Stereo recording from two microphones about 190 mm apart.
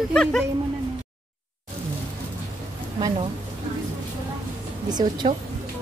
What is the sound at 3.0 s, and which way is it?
Speech, 20° right (ahead or behind).